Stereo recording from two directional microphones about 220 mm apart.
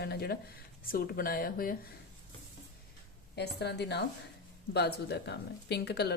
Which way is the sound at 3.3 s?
50° left (ahead or behind).